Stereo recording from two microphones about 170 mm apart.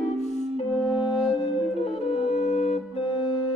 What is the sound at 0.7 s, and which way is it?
Music, centre (ahead or behind).